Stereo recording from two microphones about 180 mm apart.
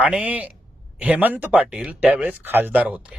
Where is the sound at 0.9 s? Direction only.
10° right (ahead or behind).